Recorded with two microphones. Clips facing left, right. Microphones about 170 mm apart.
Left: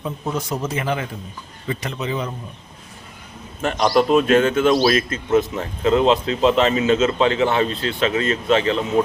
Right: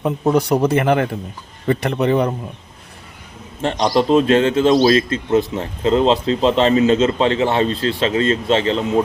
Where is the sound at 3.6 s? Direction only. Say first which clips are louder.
Right 1 dB; 30° right (ahead or behind).